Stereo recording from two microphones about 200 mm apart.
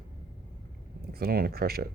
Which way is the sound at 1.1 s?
50° right (ahead or behind).